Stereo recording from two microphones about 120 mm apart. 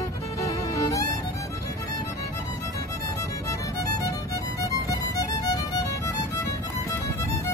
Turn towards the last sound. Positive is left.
turn(degrees=30)  # may be behind; listen again after turning